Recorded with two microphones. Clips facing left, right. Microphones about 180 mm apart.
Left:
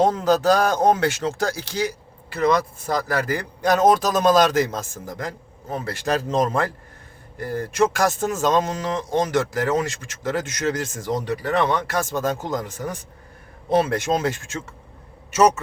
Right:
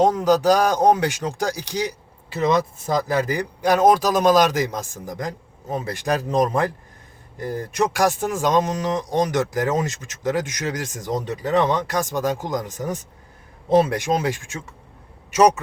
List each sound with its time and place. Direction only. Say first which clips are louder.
0.0 s speech: right 1 dB; 15° right (ahead or behind)